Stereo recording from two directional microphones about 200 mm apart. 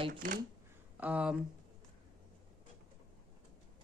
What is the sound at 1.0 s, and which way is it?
Speech, 5° right (ahead or behind).